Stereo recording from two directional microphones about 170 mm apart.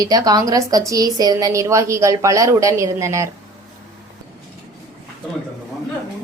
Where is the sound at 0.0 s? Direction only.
20° right (ahead or behind).